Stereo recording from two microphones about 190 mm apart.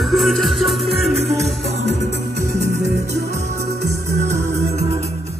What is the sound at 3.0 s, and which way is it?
Music, 15° right (ahead or behind).